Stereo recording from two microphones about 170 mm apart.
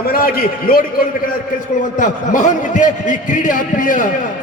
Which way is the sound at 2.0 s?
45° left (ahead or behind).